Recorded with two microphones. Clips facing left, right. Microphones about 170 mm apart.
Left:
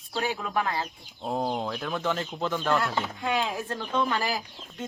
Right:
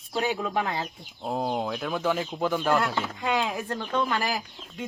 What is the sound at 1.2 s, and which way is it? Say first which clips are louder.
Speech: right 1 dB; centre (ahead or behind).